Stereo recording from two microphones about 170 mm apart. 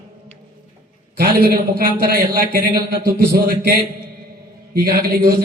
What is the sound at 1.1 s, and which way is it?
A man's voice, 60° right (ahead or behind).